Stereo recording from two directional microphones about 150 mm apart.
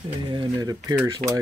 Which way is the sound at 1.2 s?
55° right (ahead or behind).